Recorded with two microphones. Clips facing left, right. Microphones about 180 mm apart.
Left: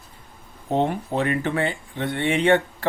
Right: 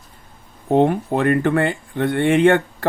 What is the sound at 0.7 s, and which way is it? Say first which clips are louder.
Speech: right 6 dB; 55° right (ahead or behind).